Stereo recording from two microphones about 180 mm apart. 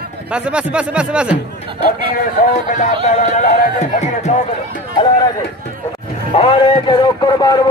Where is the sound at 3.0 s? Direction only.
45° left (ahead or behind).